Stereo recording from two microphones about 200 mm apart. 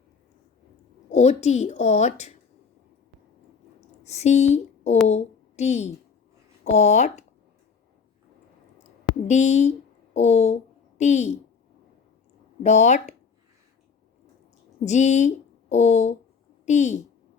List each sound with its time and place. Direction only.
1.1 s a woman's voice: 35° left (ahead or behind)
3.8 s a sound: 35° left (ahead or behind)
5.0 s a woman's voice: 35° left (ahead or behind)
8.8 s a sound: 35° left (ahead or behind)
10.2 s a woman's voice: 35° left (ahead or behind)
12.6 s a woman's voice: 35° left (ahead or behind)
14.8 s a woman's voice: 35° left (ahead or behind)